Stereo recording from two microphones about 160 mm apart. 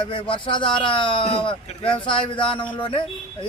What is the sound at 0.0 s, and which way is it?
A man's voice, 30° left (ahead or behind).